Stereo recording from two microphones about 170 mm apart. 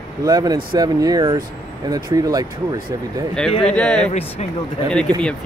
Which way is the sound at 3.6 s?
5° left (ahead or behind).